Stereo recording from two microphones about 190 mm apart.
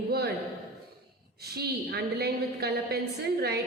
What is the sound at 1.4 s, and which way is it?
A woman's voice, 55° right (ahead or behind).